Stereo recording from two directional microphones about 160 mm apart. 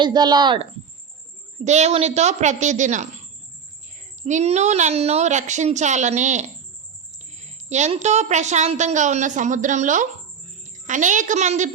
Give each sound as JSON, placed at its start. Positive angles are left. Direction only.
{"t": 0.0, "sound": "speech", "side_deg": -25}
{"t": 1.6, "sound": "a woman's voice", "side_deg": -45}